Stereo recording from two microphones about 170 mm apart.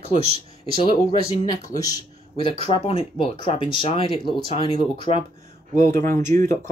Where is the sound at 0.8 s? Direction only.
30° left (ahead or behind).